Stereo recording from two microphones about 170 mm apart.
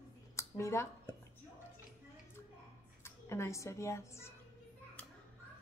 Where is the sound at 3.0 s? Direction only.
15° left (ahead or behind).